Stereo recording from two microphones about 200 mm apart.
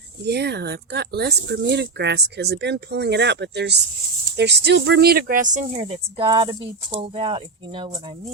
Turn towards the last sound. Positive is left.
turn(degrees=-25)  # may be behind; listen again after turning